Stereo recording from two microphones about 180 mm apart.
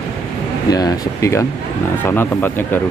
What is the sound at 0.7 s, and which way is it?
Speech, 20° left (ahead or behind).